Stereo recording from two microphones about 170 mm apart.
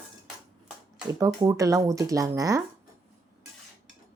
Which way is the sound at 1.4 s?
20° right (ahead or behind).